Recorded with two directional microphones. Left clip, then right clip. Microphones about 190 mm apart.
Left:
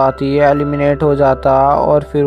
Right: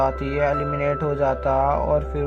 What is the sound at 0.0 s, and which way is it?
Speech, 40° left (ahead or behind).